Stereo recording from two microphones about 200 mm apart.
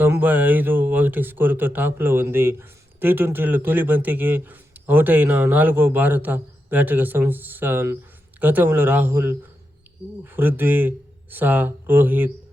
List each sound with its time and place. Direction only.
0.0 s speech: 10° right (ahead or behind)